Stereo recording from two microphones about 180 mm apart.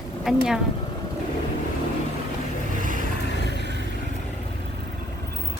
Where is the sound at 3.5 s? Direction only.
70° right (ahead or behind).